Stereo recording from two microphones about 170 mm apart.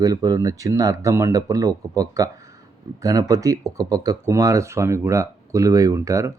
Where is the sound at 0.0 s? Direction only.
20° right (ahead or behind).